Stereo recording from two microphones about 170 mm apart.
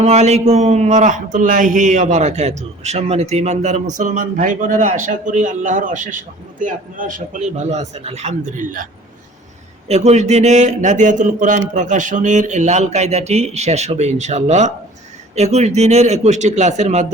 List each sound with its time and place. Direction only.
0.0 s speech: 40° right (ahead or behind)
9.9 s speech: 40° right (ahead or behind)